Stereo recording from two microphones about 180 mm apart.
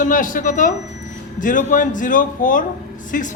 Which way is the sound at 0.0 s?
45° left (ahead or behind).